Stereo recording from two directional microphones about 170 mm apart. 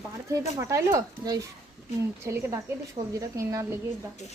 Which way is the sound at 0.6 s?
15° right (ahead or behind).